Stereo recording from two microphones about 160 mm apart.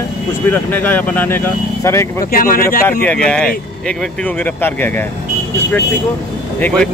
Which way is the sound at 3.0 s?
5° left (ahead or behind).